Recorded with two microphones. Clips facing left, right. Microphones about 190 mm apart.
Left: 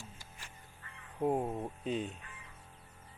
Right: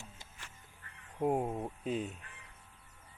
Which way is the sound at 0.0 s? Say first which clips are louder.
Left 1 dB; 20° right (ahead or behind).